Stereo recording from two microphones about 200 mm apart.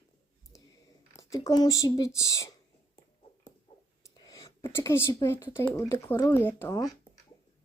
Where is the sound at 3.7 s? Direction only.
25° left (ahead or behind).